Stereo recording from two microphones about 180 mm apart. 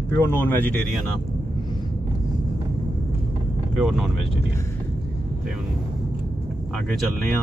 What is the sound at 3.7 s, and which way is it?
Speech, centre (ahead or behind).